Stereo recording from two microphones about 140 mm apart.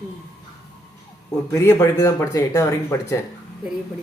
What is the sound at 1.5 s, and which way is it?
A man's voice, 15° left (ahead or behind).